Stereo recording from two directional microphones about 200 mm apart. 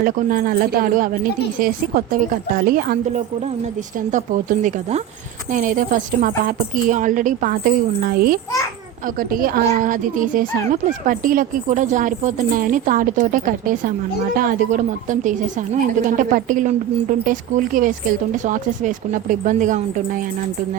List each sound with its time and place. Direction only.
0.0 s a woman's voice: 45° right (ahead or behind)
4.1 s a woman's voice: 40° right (ahead or behind)